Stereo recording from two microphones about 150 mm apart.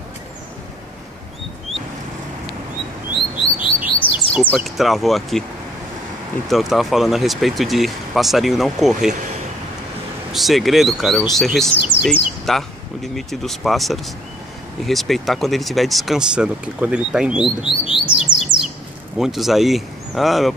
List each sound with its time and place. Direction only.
3.6 s chirp: 35° left (ahead or behind)
4.6 s speech: centre (ahead or behind)
6.5 s speech: centre (ahead or behind)
10.3 s speech: centre (ahead or behind)
17.6 s speech: 35° left (ahead or behind)
18.4 s bird: 5° right (ahead or behind)
19.1 s speech: centre (ahead or behind)